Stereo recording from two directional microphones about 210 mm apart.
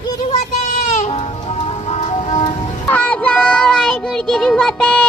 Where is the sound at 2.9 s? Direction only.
5° left (ahead or behind).